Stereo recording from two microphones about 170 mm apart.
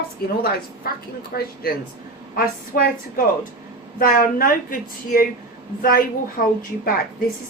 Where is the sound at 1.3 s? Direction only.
60° left (ahead or behind).